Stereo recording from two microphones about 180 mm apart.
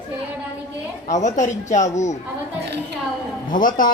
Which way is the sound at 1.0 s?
40° left (ahead or behind).